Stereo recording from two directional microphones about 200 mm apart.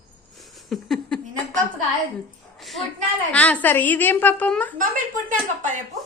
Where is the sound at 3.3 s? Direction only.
5° left (ahead or behind).